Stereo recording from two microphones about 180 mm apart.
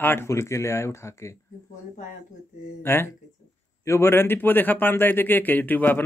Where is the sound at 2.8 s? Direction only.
15° left (ahead or behind).